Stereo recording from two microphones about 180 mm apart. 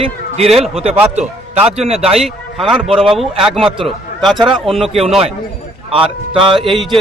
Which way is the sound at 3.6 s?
30° right (ahead or behind).